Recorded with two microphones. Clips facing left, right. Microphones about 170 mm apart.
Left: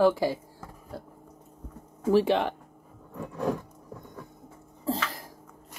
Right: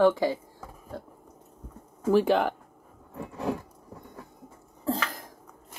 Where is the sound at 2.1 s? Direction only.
30° left (ahead or behind).